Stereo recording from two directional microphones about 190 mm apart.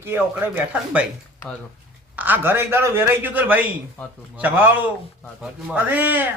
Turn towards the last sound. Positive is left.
turn(degrees=-10)  # may be behind; listen again after turning